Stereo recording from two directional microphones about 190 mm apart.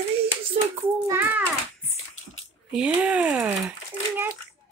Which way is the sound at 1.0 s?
10° right (ahead or behind).